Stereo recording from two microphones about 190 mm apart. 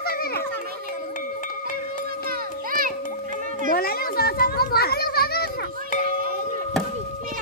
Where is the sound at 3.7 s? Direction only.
50° left (ahead or behind).